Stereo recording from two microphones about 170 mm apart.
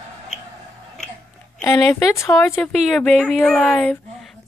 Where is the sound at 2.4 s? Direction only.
15° left (ahead or behind).